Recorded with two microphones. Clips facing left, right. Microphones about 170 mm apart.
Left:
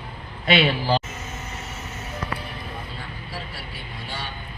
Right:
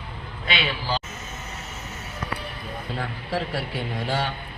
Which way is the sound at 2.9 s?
45° right (ahead or behind).